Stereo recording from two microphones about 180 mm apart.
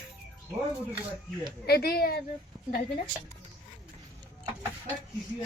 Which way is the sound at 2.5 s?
25° right (ahead or behind).